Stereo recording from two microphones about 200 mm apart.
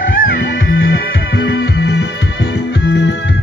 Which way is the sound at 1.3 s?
60° left (ahead or behind).